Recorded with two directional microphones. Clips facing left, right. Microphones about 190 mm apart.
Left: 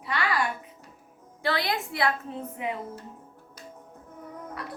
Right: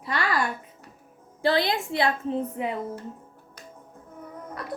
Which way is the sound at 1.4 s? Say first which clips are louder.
Right 5 dB; 30° right (ahead or behind).